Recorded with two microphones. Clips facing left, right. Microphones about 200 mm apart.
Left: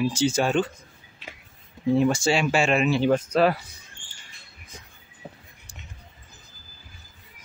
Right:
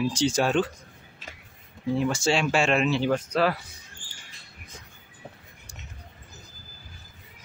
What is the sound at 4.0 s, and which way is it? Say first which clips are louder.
Rodents: right 2 dB; 90° right.